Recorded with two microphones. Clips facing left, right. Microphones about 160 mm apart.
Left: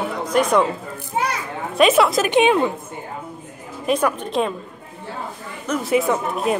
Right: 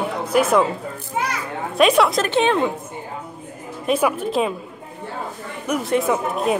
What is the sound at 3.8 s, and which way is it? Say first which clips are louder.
Speech: right 1 dB; 5° right (ahead or behind).